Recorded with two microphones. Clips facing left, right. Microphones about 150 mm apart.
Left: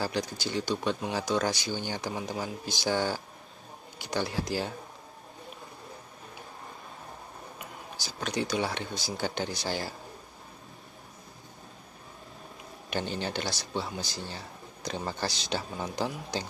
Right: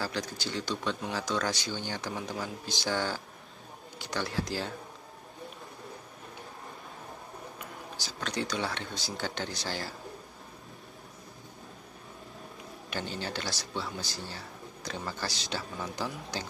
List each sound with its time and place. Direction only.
0.0 s speech: 15° left (ahead or behind)
8.0 s speech: 15° left (ahead or behind)
12.9 s a man's voice: 20° left (ahead or behind)